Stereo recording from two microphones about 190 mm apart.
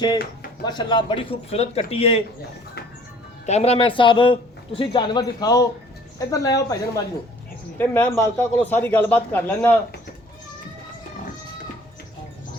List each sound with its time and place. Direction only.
0.6 s a man's voice: 25° left (ahead or behind)
3.4 s a man's voice: 35° left (ahead or behind); by 9.7 s 10° left (ahead or behind)